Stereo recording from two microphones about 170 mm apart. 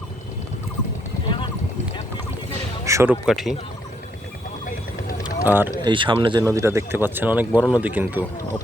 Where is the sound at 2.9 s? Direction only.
15° right (ahead or behind).